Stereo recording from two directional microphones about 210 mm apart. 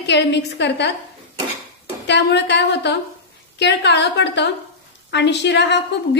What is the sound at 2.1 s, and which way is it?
A woman's voice, 55° left (ahead or behind).